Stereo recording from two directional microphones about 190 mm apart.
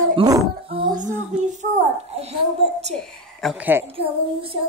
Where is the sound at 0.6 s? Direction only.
25° right (ahead or behind).